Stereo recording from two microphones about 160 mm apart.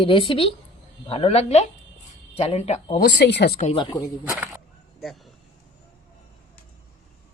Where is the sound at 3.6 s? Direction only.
30° left (ahead or behind).